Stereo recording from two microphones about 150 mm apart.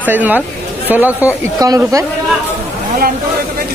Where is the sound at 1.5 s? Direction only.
25° right (ahead or behind).